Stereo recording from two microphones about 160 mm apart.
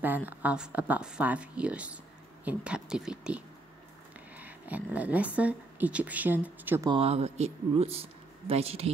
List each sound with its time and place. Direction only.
0.0 s speech: 10° right (ahead or behind)
6.9 s speech: 40° right (ahead or behind)